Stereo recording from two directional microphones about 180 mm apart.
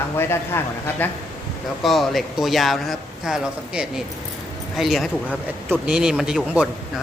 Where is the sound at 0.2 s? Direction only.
15° left (ahead or behind).